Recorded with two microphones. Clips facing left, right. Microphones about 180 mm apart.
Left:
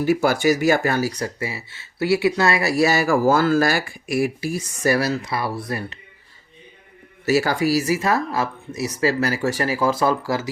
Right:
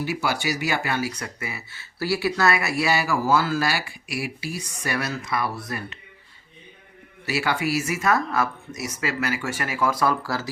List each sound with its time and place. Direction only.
0.0 s speech: 45° left (ahead or behind); by 6.0 s 30° left (ahead or behind)
7.3 s speech: 40° left (ahead or behind); by 10.5 s 20° left (ahead or behind)